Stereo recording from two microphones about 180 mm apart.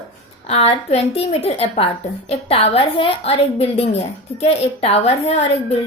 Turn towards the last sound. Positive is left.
turn(degrees=35)  # may be behind; listen again after turning